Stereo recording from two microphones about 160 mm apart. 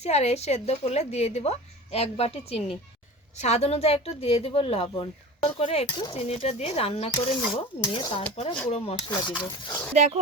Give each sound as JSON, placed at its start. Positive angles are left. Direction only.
{"t": 0.0, "sound": "a woman's voice", "side_deg": 40}
{"t": 9.9, "sound": "speech", "side_deg": -45}